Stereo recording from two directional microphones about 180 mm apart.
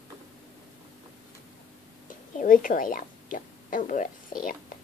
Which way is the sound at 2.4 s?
50° left (ahead or behind).